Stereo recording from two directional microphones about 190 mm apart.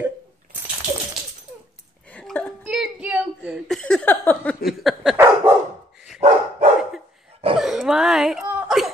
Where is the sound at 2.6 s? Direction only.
5° right (ahead or behind).